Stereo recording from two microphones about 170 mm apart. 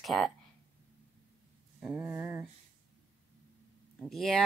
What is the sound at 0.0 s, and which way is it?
Speech, centre (ahead or behind).